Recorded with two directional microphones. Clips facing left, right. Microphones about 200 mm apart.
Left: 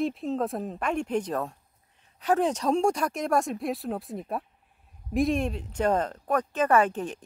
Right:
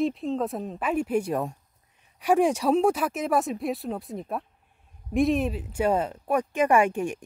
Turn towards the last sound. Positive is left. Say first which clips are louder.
# right 1 dB
turn(degrees=-10)  # may be behind; listen again after turning